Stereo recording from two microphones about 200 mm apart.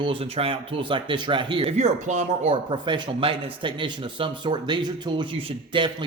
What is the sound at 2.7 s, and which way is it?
A man's voice, 25° right (ahead or behind).